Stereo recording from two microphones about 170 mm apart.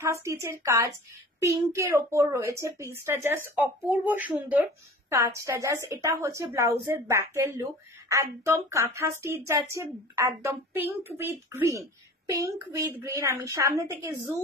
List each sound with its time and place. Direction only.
0.0 s a woman's voice: 15° right (ahead or behind)